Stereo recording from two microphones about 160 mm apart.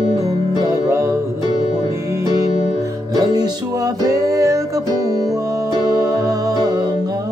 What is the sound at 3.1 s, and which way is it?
Music, 25° right (ahead or behind).